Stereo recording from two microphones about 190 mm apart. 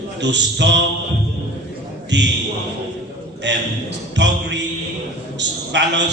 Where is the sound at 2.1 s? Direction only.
70° right (ahead or behind).